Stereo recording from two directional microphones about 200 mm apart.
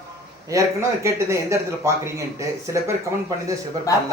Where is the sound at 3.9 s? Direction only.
15° left (ahead or behind).